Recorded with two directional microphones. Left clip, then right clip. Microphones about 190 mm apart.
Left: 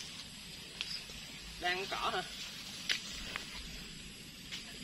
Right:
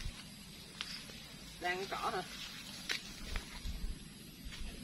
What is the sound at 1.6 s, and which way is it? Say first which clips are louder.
Speech: left 2 dB; 20° left (ahead or behind).